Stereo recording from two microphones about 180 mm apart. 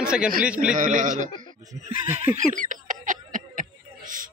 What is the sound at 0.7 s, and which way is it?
Speech, 45° right (ahead or behind).